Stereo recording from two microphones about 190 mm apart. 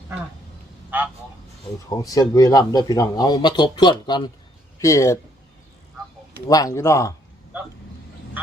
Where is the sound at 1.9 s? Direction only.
20° left (ahead or behind).